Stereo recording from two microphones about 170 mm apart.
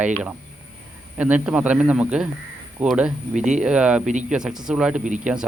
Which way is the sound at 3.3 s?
45° right (ahead or behind).